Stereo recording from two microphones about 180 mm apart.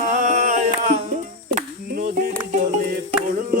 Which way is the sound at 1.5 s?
40° right (ahead or behind).